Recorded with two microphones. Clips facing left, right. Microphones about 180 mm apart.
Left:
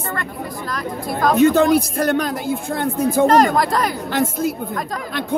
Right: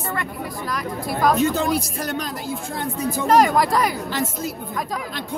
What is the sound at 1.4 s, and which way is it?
Speech, 60° left (ahead or behind).